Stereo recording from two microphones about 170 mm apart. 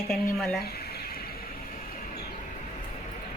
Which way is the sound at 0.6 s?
65° left (ahead or behind).